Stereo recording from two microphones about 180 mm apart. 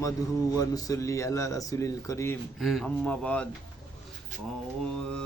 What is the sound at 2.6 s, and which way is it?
Speech, centre (ahead or behind).